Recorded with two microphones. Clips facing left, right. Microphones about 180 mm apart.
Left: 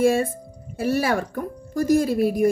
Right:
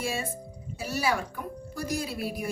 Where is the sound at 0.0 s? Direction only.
55° left (ahead or behind).